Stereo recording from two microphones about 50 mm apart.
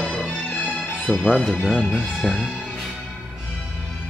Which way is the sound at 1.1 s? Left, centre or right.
Left.